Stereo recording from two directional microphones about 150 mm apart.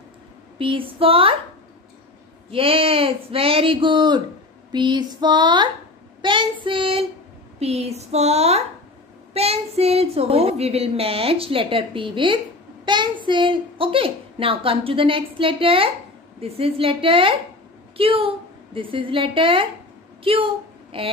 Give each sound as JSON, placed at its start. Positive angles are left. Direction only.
{"t": 0.6, "sound": "a woman's voice", "side_deg": -35}
{"t": 2.5, "sound": "a woman's voice", "side_deg": -40}
{"t": 4.7, "sound": "female singing", "side_deg": -30}
{"t": 6.2, "sound": "a woman's voice", "side_deg": -30}